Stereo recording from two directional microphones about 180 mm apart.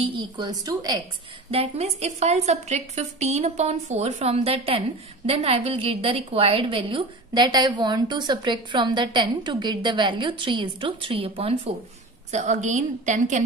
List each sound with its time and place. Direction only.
0.0 s a woman's voice: 25° right (ahead or behind)
1.5 s a woman's voice: 35° right (ahead or behind)